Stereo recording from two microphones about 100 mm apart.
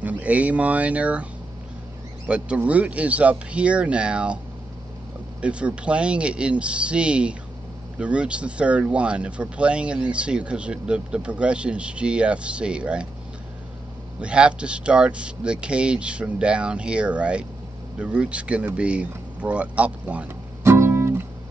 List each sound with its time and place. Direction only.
0.0 s speech: 15° right (ahead or behind)
2.2 s speech: 10° right (ahead or behind)
5.4 s speech: 10° right (ahead or behind)
14.2 s speech: 10° right (ahead or behind)
20.6 s guitar: 25° right (ahead or behind)